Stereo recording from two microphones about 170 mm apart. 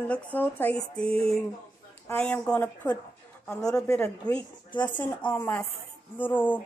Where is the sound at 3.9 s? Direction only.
5° left (ahead or behind).